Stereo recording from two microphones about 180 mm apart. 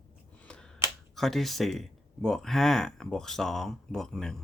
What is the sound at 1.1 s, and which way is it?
Speech, centre (ahead or behind).